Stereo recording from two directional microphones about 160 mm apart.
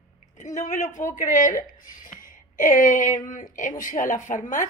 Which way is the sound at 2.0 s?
55° left (ahead or behind).